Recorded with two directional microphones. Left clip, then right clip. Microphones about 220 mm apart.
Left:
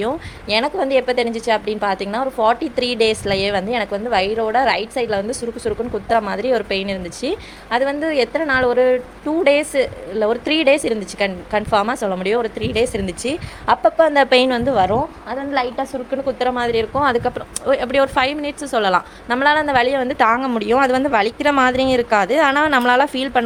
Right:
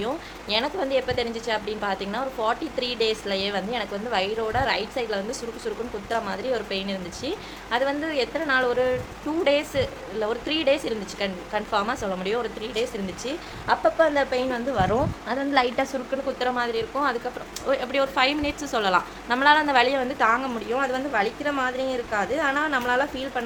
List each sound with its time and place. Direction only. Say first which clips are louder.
0.0 s a woman's voice: left 7 dB; 30° left (ahead or behind)
15.7 s a woman's voice: left 2 dB; 5° left (ahead or behind)
16.2 s a woman's voice: left 7 dB; 30° left (ahead or behind)